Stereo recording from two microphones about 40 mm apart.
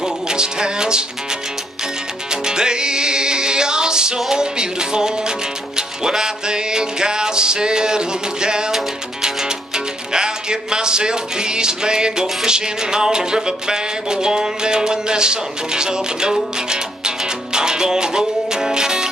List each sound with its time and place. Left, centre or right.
0.0 s music: centre
2.4 s music: centre